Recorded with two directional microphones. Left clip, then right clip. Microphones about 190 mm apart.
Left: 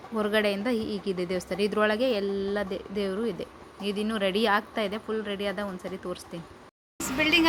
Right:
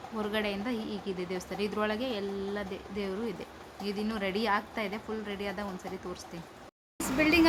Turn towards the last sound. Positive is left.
turn(degrees=0)  # may be behind; listen again after turning